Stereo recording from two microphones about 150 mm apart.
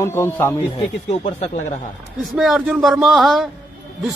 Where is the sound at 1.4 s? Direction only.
55° left (ahead or behind).